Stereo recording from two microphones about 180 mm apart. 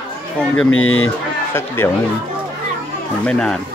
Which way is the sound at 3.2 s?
5° left (ahead or behind).